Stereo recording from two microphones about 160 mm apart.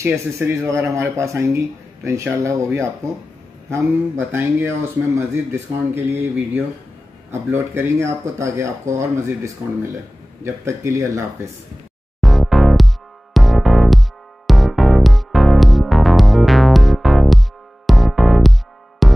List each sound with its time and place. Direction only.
0.0 s speech: 15° right (ahead or behind)
10.4 s speech: 15° right (ahead or behind)
12.2 s music: centre (ahead or behind)